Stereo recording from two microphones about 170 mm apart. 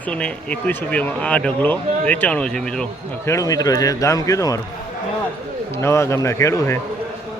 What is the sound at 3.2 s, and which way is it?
Speech, 20° left (ahead or behind).